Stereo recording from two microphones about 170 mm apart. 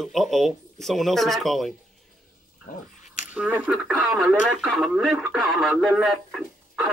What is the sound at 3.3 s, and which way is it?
A man's voice, 5° right (ahead or behind).